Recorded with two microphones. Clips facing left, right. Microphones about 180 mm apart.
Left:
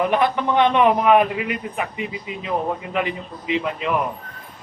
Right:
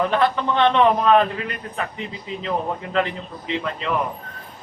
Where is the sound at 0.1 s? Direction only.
15° left (ahead or behind).